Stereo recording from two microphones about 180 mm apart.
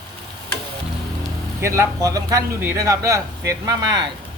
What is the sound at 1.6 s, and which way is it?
Speech, 15° right (ahead or behind).